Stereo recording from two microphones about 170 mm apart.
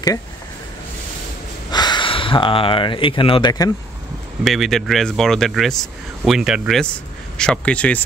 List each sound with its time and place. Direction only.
1.7 s speech: 25° left (ahead or behind)
4.5 s speech: centre (ahead or behind)